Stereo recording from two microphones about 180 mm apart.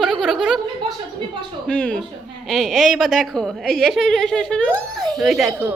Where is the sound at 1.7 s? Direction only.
5° left (ahead or behind).